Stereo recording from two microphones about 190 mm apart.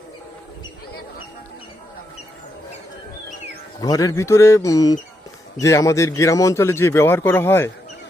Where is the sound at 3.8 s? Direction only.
20° left (ahead or behind).